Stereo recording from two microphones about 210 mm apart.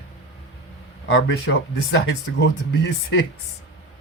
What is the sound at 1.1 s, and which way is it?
Speech, 60° left (ahead or behind).